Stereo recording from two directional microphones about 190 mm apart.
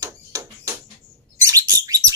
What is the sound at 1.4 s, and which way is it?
Bird, 15° right (ahead or behind).